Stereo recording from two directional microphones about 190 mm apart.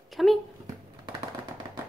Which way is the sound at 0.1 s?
Centre (ahead or behind).